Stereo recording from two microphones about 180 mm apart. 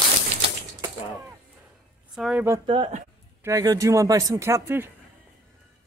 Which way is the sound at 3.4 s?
20° right (ahead or behind).